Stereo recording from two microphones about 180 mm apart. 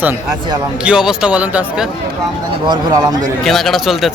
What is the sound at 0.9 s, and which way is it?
Speech, 5° right (ahead or behind).